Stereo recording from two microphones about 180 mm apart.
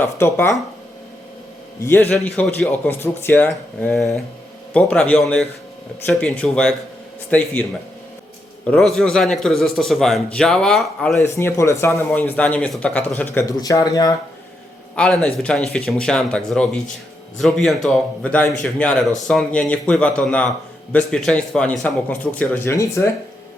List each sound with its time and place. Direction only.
0.0 s speech: 10° left (ahead or behind)
2.0 s a man's voice: 5° left (ahead or behind)
11.2 s speech: 15° left (ahead or behind)
13.3 s speech: 20° left (ahead or behind)
14.9 s a man's voice: 5° left (ahead or behind)